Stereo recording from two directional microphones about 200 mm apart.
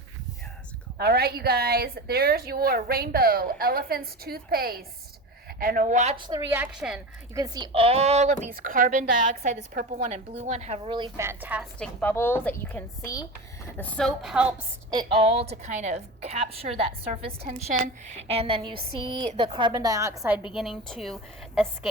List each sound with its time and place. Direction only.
0.9 s a woman's voice: 55° right (ahead or behind); by 6.1 s 35° right (ahead or behind)
6.1 s a woman's voice: 25° right (ahead or behind)
6.5 s a woman's voice: 5° right (ahead or behind)
7.3 s a woman's voice: 20° right (ahead or behind); by 10.9 s 35° right (ahead or behind)
10.9 s a woman's voice: 20° right (ahead or behind)
11.3 s a woman's voice: 10° right (ahead or behind)
11.8 s a woman's voice: 10° left (ahead or behind)
14.8 s a woman's voice: 25° right (ahead or behind)
20.5 s a woman's voice: centre (ahead or behind)